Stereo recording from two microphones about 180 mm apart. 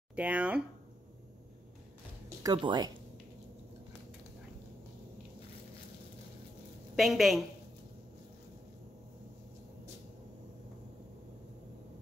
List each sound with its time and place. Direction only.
0.1 s speech: 10° right (ahead or behind)
2.2 s speech: 20° right (ahead or behind)
7.0 s a woman's voice: centre (ahead or behind)